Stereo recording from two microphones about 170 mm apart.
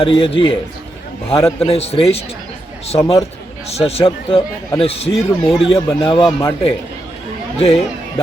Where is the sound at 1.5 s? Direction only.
35° left (ahead or behind).